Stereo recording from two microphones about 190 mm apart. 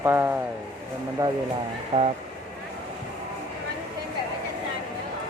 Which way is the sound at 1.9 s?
30° right (ahead or behind).